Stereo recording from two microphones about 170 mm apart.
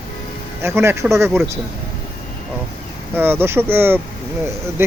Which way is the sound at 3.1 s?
10° right (ahead or behind).